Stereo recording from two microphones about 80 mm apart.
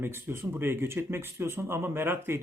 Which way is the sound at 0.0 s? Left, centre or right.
Right.